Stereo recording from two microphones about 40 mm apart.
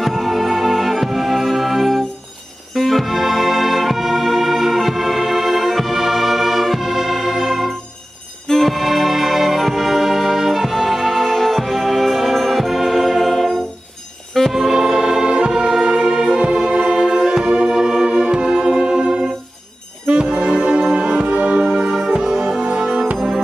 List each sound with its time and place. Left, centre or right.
0.0 s music: centre
14.5 s music: centre